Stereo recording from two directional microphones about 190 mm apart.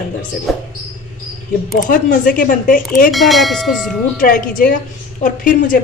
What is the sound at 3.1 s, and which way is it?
Tubular bells, centre (ahead or behind).